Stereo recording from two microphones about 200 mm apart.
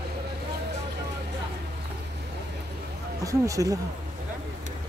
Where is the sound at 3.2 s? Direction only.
15° right (ahead or behind).